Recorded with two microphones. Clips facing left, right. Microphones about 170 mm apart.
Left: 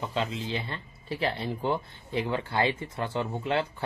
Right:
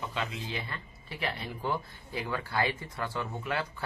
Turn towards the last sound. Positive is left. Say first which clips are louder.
# left 5 dB
turn(degrees=25)  # may be behind; listen again after turning